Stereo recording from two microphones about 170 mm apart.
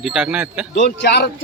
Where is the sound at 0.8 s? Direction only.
80° left.